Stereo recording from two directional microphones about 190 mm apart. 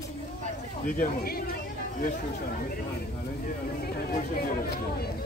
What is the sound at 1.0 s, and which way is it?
Chatter, 55° left (ahead or behind).